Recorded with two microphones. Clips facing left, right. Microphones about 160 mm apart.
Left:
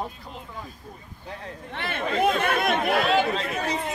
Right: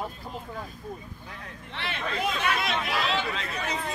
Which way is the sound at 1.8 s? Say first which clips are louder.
Left 6 dB; 50° left (ahead or behind).